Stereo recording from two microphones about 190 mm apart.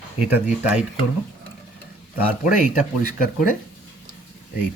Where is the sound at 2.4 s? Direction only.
45° left (ahead or behind).